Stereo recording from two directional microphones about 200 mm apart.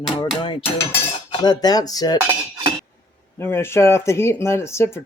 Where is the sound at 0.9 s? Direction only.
15° left (ahead or behind).